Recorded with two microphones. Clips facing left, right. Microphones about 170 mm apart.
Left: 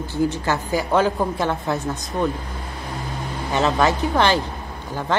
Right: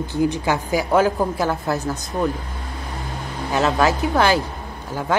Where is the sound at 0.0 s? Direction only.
15° right (ahead or behind).